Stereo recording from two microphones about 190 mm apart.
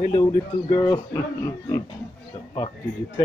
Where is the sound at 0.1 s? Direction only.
15° left (ahead or behind).